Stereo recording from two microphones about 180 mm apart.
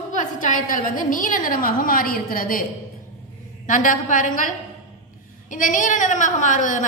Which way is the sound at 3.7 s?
45° left (ahead or behind).